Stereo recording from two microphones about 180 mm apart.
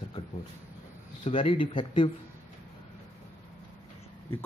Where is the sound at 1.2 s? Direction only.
30° left (ahead or behind).